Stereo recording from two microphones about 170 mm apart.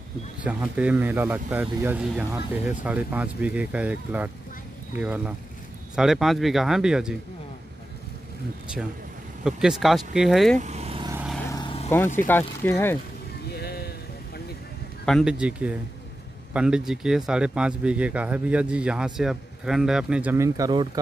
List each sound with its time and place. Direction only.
0.4 s speech: 5° right (ahead or behind)
9.4 s speech: 5° right (ahead or behind)
10.6 s vehicle: 40° right (ahead or behind)
11.4 s vehicle: 20° left (ahead or behind)
12.3 s speech: 10° left (ahead or behind)
13.5 s a sound: 70° left (ahead or behind)
15.0 s speech: centre (ahead or behind); by 21.0 s 25° right (ahead or behind)